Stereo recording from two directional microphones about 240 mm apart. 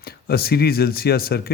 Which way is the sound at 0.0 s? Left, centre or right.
Left.